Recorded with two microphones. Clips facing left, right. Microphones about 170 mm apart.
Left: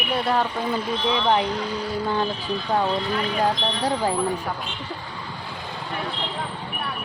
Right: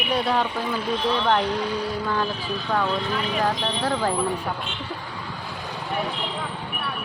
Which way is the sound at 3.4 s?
15° left (ahead or behind).